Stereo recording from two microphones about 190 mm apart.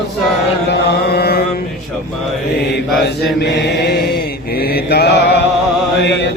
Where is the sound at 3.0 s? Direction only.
60° left (ahead or behind).